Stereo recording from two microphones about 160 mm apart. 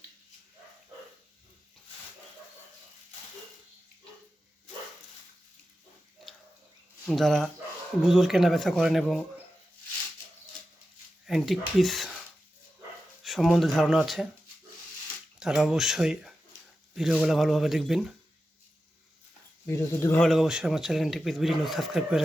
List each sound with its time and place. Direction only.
7.0 s speech: 5° left (ahead or behind)
11.3 s speech: centre (ahead or behind)
13.2 s speech: centre (ahead or behind)
15.4 s speech: 5° right (ahead or behind)
19.6 s speech: 15° left (ahead or behind)
20.2 s speech: centre (ahead or behind)